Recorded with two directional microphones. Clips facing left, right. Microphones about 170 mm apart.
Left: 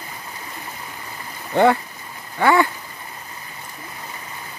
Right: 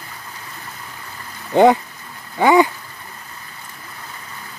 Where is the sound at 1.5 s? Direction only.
15° right (ahead or behind).